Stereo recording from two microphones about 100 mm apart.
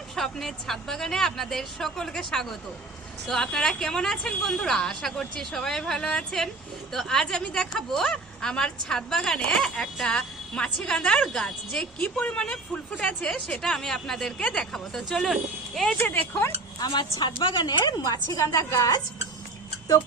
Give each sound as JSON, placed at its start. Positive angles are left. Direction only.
{"t": 0.2, "sound": "a woman's voice", "side_deg": 0}
{"t": 16.0, "sound": "speech", "side_deg": 20}
{"t": 16.8, "sound": "a woman's voice", "side_deg": 50}